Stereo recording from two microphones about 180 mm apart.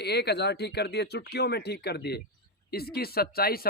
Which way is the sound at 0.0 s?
65° left (ahead or behind).